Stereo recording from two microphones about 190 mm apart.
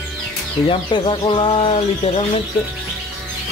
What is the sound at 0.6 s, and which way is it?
Speech, 30° left (ahead or behind).